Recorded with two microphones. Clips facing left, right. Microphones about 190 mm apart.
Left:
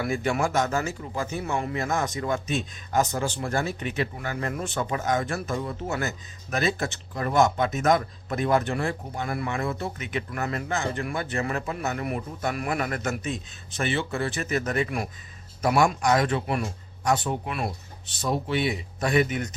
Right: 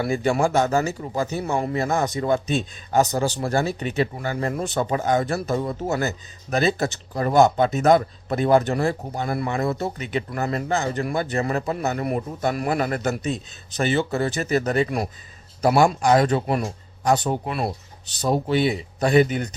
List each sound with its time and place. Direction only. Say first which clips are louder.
0.0 s speech: right 5 dB; 30° right (ahead or behind)